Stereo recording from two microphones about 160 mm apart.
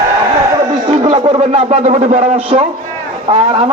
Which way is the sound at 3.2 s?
35° right (ahead or behind).